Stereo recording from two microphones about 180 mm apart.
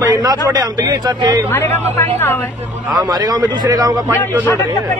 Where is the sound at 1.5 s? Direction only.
15° left (ahead or behind).